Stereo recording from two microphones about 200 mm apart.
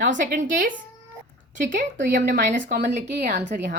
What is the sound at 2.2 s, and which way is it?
Speech, 55° right (ahead or behind).